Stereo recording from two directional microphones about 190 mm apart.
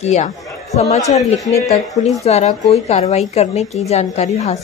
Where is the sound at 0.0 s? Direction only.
35° left (ahead or behind).